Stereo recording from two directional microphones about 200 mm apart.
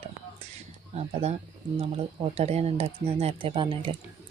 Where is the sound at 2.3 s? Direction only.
30° right (ahead or behind).